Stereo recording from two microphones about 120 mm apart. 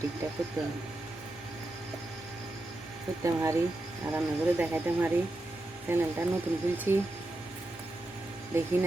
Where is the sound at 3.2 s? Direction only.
25° right (ahead or behind).